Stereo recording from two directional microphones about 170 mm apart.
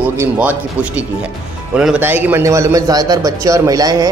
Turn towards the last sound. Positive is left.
turn(degrees=-20)  # may be behind; listen again after turning